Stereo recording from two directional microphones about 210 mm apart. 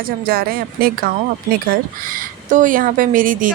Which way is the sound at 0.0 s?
45° right (ahead or behind).